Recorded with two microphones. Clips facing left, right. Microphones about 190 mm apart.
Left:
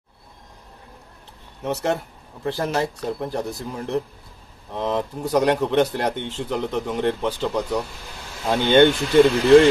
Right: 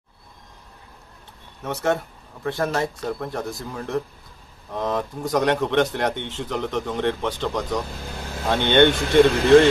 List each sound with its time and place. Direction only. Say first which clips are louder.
1.6 s speech: even; 25° left (ahead or behind)
5.2 s speech: left 2 dB; 10° left (ahead or behind)